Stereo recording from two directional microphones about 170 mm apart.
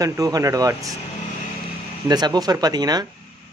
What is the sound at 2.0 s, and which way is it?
Speech, 25° right (ahead or behind).